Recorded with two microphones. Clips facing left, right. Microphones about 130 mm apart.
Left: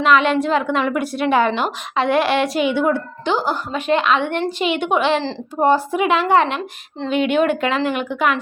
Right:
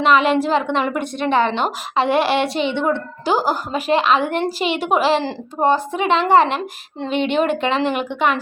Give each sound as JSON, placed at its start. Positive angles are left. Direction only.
{"t": 0.0, "sound": "a woman's voice", "side_deg": 0}
{"t": 3.2, "sound": "a woman's voice", "side_deg": -10}